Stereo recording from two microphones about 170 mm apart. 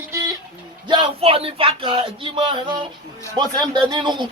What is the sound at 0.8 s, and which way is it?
Speech, 30° right (ahead or behind).